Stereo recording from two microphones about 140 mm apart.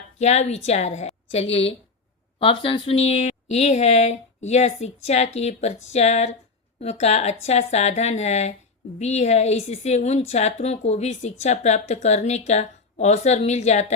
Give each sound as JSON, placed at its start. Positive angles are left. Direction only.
{"t": 0.2, "sound": "a woman's voice", "side_deg": 50}